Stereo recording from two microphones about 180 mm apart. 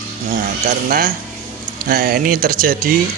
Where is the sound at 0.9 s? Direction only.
55° right (ahead or behind).